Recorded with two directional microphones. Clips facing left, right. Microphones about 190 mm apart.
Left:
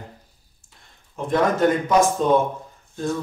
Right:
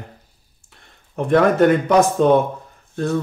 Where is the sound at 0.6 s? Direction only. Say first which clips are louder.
Right 3 dB; 65° right (ahead or behind).